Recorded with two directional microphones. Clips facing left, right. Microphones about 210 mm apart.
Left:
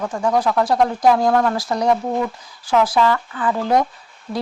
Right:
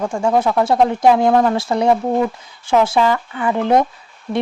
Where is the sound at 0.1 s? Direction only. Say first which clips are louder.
Right 1 dB; 25° right (ahead or behind).